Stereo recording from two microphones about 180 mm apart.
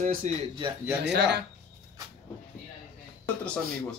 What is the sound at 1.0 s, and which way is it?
Speech, 70° right (ahead or behind).